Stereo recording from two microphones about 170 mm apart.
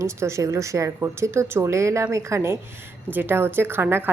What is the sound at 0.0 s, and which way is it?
A woman's voice, 15° right (ahead or behind).